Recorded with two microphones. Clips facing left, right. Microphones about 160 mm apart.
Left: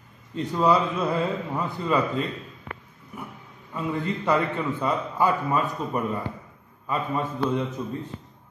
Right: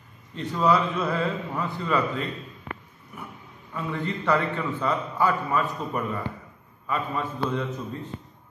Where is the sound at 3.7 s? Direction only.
20° left (ahead or behind).